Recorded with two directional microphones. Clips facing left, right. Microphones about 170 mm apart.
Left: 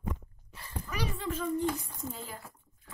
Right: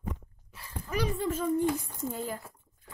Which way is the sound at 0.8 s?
50° right (ahead or behind).